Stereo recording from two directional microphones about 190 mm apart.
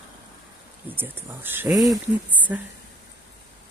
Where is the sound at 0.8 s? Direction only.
10° right (ahead or behind).